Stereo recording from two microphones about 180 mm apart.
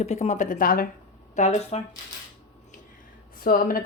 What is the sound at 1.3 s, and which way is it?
Speech, 40° left (ahead or behind).